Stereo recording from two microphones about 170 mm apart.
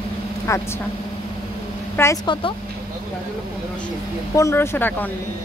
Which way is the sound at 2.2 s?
30° left (ahead or behind).